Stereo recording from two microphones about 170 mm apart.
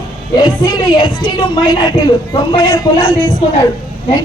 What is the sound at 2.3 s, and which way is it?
Speech, 25° left (ahead or behind).